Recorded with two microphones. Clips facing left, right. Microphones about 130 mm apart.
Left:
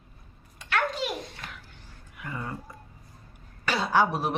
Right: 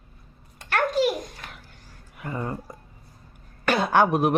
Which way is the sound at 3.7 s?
55° right (ahead or behind).